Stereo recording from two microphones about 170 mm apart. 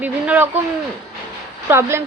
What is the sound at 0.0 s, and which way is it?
Speech, 10° right (ahead or behind).